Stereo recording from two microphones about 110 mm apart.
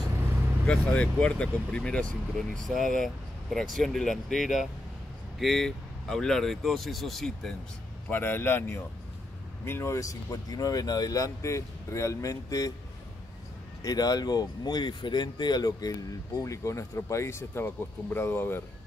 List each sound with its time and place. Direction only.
0.7 s speech: 10° left (ahead or behind)
8.1 s a man's voice: 20° left (ahead or behind)
13.8 s a man's voice: 35° left (ahead or behind); by 18.6 s 20° left (ahead or behind)